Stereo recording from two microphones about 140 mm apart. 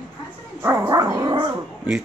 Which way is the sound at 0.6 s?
20° right (ahead or behind).